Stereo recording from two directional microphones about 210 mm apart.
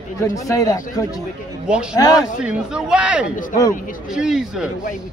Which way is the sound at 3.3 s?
40° left (ahead or behind).